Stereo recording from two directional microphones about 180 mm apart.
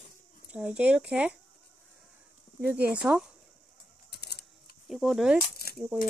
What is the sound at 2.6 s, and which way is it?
Speech, 5° right (ahead or behind).